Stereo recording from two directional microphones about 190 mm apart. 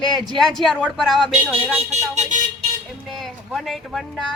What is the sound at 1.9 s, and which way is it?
Speech, 35° right (ahead or behind).